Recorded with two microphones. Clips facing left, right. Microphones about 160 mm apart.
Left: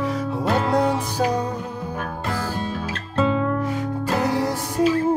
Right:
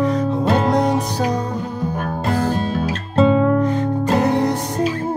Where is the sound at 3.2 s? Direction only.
35° right (ahead or behind).